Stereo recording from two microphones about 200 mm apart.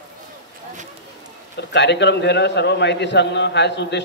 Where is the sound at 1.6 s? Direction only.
60° left (ahead or behind).